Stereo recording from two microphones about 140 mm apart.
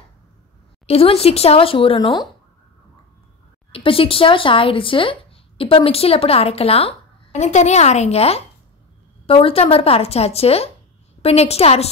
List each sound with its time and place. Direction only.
0.8 s speech: 45° left (ahead or behind)
3.7 s a woman's voice: 40° left (ahead or behind)